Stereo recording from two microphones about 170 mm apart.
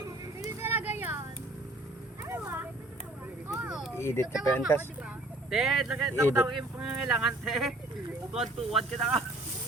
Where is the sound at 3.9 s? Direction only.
15° left (ahead or behind).